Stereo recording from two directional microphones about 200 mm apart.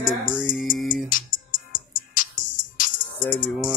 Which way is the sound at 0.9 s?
45° left (ahead or behind).